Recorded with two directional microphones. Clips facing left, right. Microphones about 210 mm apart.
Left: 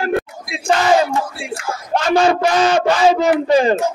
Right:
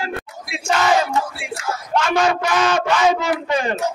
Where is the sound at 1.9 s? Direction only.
35° left (ahead or behind).